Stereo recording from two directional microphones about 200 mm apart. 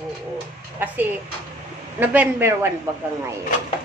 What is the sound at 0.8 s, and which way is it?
A woman's voice, 10° right (ahead or behind).